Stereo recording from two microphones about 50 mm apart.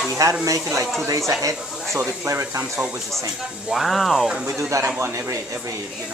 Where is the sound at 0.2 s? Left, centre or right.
Right.